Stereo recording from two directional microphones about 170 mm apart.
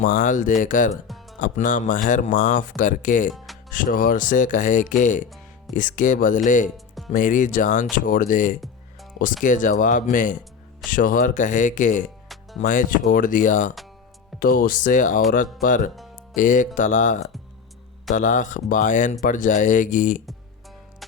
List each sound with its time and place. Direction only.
0.0 s speech: 50° left (ahead or behind)
1.0 s music: centre (ahead or behind)
1.4 s speech: 50° left (ahead or behind)
3.3 s music: centre (ahead or behind)
3.7 s speech: 55° left (ahead or behind)